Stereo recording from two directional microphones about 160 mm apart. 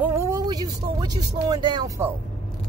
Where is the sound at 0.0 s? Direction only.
15° right (ahead or behind).